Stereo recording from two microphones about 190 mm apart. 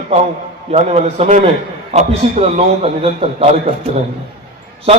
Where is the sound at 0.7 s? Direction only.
35° right (ahead or behind).